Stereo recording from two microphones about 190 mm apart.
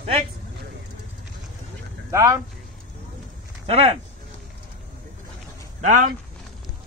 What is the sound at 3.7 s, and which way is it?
Speech, 30° right (ahead or behind).